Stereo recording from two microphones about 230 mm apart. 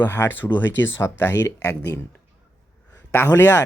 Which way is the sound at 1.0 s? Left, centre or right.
Centre.